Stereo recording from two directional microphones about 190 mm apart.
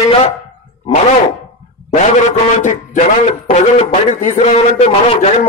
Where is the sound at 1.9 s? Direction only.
40° left (ahead or behind).